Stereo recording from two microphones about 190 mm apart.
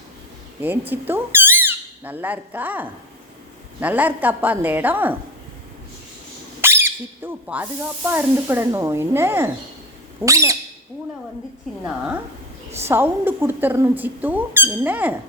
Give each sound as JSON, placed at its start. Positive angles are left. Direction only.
{"t": 0.6, "sound": "speech", "side_deg": -10}
{"t": 6.6, "sound": "speech", "side_deg": -10}
{"t": 12.8, "sound": "speech", "side_deg": -10}